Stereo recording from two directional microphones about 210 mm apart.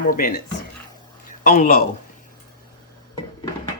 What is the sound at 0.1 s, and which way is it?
Speech, 45° left (ahead or behind).